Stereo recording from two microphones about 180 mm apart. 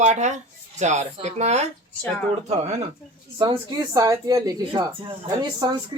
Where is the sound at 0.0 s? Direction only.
40° right (ahead or behind).